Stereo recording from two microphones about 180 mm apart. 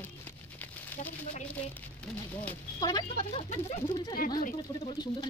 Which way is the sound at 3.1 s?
35° left (ahead or behind).